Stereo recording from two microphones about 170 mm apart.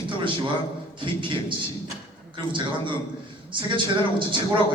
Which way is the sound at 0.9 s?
30° right (ahead or behind).